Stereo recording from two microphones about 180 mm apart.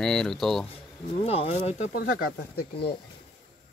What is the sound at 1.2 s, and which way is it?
Speech, 35° left (ahead or behind).